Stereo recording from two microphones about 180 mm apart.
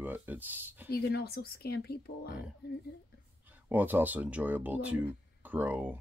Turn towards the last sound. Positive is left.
turn(degrees=-10)  # may be behind; listen again after turning